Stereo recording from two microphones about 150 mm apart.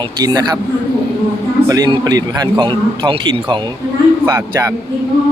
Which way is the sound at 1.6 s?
25° right (ahead or behind).